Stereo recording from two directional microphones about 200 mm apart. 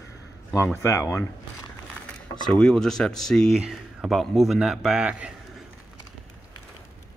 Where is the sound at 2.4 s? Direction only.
5° left (ahead or behind).